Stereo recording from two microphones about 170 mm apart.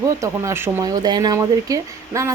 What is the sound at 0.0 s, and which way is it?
Speech, 20° right (ahead or behind).